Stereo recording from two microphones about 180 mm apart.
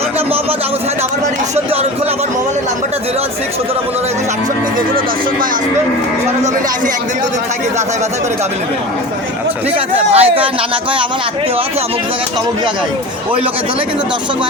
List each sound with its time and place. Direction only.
9.7 s speech: 35° right (ahead or behind)